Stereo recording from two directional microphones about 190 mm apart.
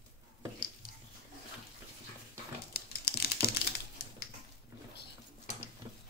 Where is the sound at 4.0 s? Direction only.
55° left (ahead or behind).